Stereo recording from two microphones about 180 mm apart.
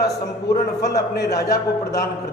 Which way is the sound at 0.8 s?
65° left (ahead or behind).